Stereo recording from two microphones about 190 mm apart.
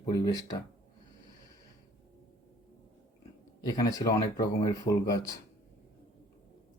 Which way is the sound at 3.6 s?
20° left (ahead or behind).